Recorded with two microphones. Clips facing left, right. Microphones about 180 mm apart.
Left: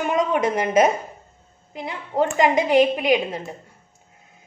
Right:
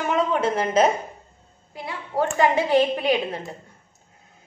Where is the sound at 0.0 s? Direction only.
15° left (ahead or behind).